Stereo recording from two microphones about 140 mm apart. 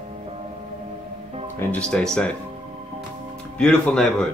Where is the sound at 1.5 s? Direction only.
5° left (ahead or behind).